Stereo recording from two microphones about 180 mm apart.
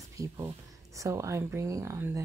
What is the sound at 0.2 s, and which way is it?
Speech, 15° right (ahead or behind).